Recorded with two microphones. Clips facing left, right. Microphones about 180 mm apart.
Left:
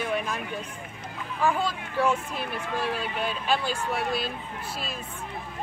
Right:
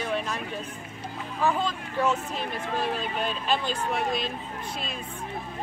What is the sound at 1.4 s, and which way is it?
Speech, 10° left (ahead or behind).